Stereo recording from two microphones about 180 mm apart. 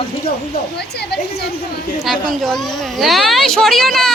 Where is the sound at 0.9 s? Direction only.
65° left (ahead or behind).